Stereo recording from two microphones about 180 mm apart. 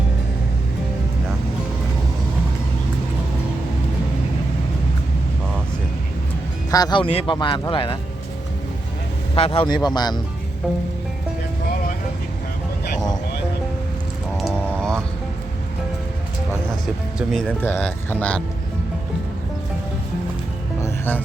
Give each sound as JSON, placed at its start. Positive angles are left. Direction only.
{"t": 6.7, "sound": "speech", "side_deg": 20}
{"t": 9.3, "sound": "speech", "side_deg": 30}
{"t": 14.3, "sound": "music", "side_deg": 0}
{"t": 16.8, "sound": "speech", "side_deg": 0}
{"t": 20.8, "sound": "music", "side_deg": 10}